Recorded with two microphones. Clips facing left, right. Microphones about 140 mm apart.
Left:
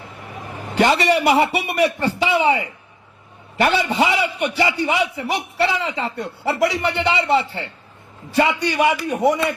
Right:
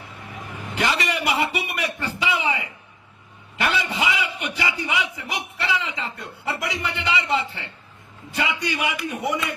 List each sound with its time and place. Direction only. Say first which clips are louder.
0.4 s a man's voice: left 8 dB; 35° left (ahead or behind)